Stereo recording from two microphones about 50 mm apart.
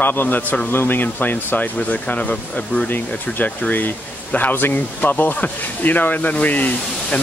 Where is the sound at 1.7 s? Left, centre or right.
Left.